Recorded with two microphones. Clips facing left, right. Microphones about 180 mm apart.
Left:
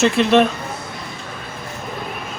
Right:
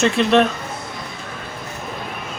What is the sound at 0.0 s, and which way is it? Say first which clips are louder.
Speech: left 1 dB; centre (ahead or behind).